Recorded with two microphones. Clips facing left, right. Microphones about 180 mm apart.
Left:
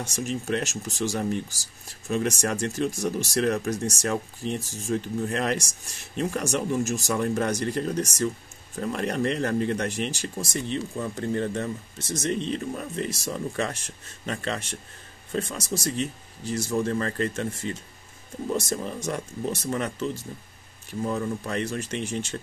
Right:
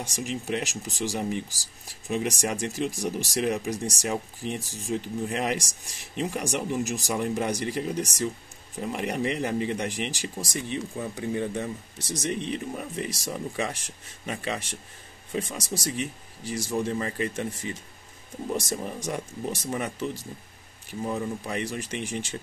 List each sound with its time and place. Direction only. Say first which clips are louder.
0.0 s speech: left 2 dB; 15° right (ahead or behind)